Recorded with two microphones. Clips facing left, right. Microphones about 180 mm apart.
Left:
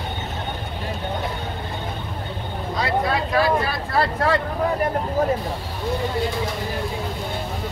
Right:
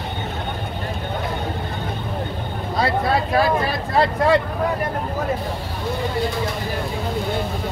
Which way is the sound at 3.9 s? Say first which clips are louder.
Right 4 dB; 15° right (ahead or behind).